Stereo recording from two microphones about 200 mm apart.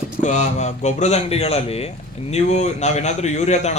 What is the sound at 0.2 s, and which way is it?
A man's voice, 35° left (ahead or behind).